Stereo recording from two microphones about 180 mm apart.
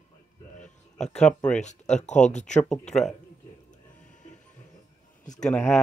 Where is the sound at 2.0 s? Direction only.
40° left (ahead or behind).